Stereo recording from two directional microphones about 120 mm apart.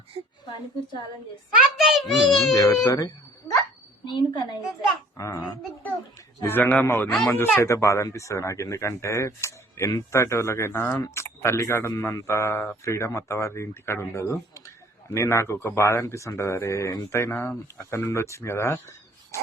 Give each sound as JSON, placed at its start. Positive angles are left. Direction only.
{"t": 0.1, "sound": "a woman's voice", "side_deg": -55}
{"t": 1.8, "sound": "a child's voice", "side_deg": 0}
{"t": 2.5, "sound": "a woman's voice", "side_deg": 30}
{"t": 4.0, "sound": "a woman's voice", "side_deg": 40}
{"t": 5.1, "sound": "a child's voice", "side_deg": 25}
{"t": 6.4, "sound": "a man's voice", "side_deg": 15}